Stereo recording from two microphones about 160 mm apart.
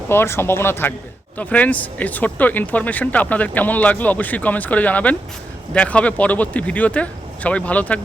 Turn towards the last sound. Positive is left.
turn(degrees=10)  # may be behind; listen again after turning